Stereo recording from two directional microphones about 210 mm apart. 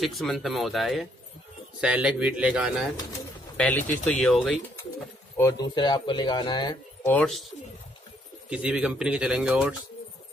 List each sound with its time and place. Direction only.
0.0 s speech: centre (ahead or behind)
3.5 s speech: 5° left (ahead or behind)
5.4 s speech: 15° left (ahead or behind)
7.1 s speech: 5° left (ahead or behind)
8.5 s speech: 5° right (ahead or behind)